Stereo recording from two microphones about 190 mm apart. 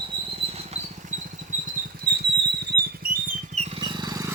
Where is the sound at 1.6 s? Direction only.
55° right (ahead or behind).